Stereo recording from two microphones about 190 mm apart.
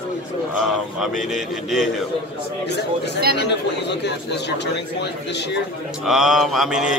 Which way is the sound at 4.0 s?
65° left (ahead or behind).